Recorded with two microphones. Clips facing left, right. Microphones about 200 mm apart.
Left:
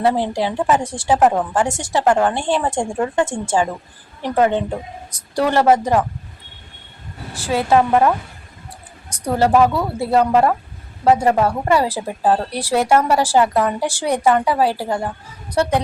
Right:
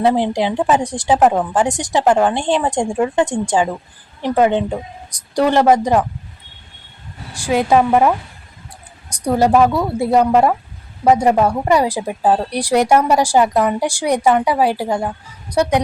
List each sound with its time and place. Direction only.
0.0 s a woman's voice: 15° right (ahead or behind)
7.4 s a woman's voice: 15° right (ahead or behind)
9.2 s a woman's voice: 10° right (ahead or behind)